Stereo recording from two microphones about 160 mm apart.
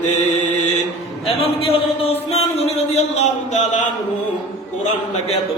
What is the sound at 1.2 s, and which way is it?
A man's voice, 35° left (ahead or behind).